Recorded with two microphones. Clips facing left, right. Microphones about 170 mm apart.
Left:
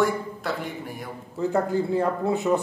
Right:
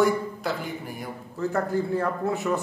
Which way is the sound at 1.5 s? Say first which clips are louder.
Left 2 dB; 20° left (ahead or behind).